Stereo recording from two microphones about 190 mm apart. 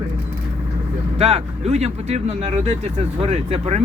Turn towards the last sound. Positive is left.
turn(degrees=-35)  # may be behind; listen again after turning